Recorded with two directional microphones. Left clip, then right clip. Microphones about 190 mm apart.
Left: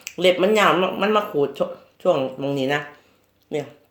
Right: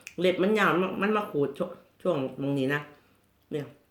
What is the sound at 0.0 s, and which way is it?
Speech, 20° right (ahead or behind).